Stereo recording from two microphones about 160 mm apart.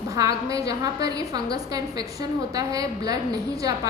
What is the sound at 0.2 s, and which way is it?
A woman's voice, 20° right (ahead or behind).